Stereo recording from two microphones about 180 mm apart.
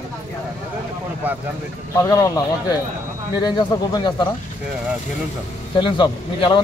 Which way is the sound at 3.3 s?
25° left (ahead or behind).